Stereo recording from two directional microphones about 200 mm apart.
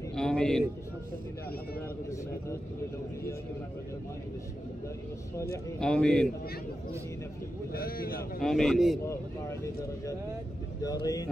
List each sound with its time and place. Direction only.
0.1 s speech: 5° left (ahead or behind)
5.8 s speech: 5° left (ahead or behind)
7.7 s speech: 45° left (ahead or behind)
8.4 s speech: centre (ahead or behind)
10.8 s speech: 20° left (ahead or behind)